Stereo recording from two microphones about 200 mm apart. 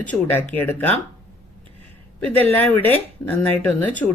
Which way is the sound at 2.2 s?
10° left (ahead or behind).